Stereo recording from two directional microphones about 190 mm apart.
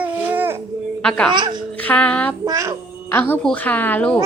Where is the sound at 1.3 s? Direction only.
25° right (ahead or behind).